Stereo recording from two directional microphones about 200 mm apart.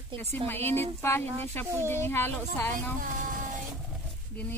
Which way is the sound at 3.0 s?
45° right (ahead or behind).